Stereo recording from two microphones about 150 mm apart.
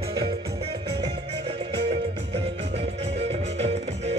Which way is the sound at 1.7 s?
90° right.